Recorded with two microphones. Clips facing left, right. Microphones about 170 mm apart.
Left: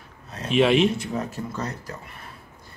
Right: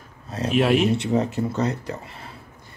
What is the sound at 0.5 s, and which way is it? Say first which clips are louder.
Speech: left 1 dB; 5° right (ahead or behind).